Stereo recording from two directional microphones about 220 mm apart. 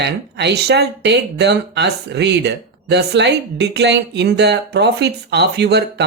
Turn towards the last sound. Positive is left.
turn(degrees=-50)  # may be behind; listen again after turning